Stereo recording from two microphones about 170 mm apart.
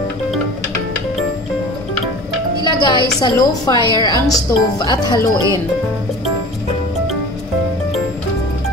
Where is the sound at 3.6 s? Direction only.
25° left (ahead or behind).